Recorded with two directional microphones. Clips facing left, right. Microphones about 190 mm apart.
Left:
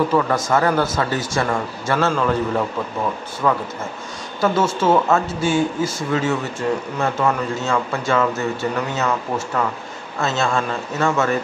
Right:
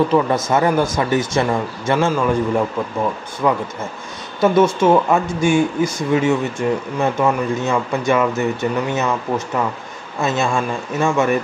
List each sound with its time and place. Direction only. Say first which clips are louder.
0.1 s speech: right 2 dB; 20° right (ahead or behind)
10.2 s speech: right 2 dB; 15° right (ahead or behind)